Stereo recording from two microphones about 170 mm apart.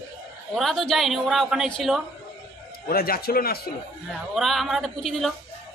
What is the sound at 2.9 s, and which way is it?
Speech, 65° left (ahead or behind).